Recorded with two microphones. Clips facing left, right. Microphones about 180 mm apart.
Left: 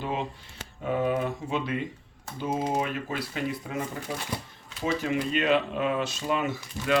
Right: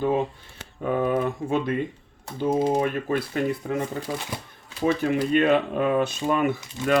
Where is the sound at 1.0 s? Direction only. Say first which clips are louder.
Right 3 dB; 50° right (ahead or behind).